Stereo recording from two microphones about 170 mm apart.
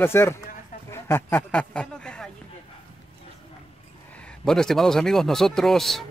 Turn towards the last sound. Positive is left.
turn(degrees=0)  # may be behind; listen again after turning